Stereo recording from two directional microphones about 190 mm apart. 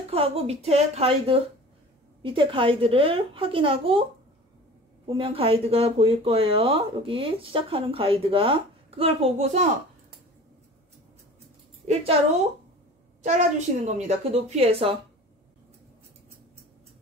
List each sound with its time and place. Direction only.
0.1 s a woman's voice: 30° right (ahead or behind)
5.0 s speech: 30° right (ahead or behind)
11.9 s a woman's voice: 30° right (ahead or behind)
13.2 s a woman's voice: 40° right (ahead or behind)